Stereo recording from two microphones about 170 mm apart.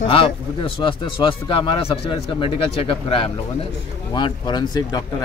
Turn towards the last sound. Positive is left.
turn(degrees=25)  # may be behind; listen again after turning